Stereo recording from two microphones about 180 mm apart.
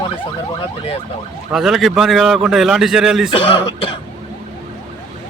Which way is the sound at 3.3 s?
30° left (ahead or behind).